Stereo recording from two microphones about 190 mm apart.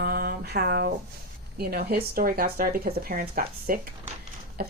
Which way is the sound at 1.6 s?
55° right (ahead or behind).